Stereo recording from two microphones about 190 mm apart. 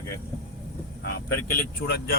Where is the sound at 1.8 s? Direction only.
90° left.